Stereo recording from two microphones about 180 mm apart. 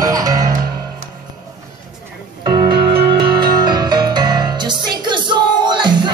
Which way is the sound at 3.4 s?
25° right (ahead or behind).